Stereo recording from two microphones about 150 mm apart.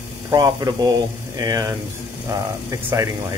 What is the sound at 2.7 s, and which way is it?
Speech, 20° right (ahead or behind).